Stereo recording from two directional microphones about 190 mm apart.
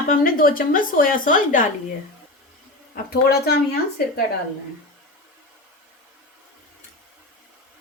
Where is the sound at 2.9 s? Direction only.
55° left (ahead or behind).